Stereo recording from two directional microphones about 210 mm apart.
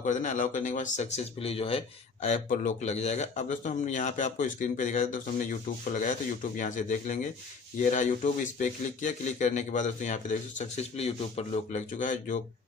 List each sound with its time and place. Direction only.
0.0 s speech: 35° left (ahead or behind)